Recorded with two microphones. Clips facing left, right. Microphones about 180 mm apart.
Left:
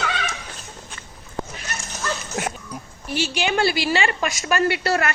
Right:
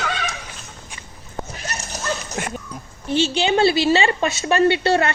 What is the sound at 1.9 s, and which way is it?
Dog, 40° right (ahead or behind).